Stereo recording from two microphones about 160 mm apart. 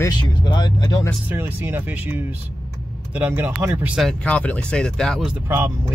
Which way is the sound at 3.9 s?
5° left (ahead or behind).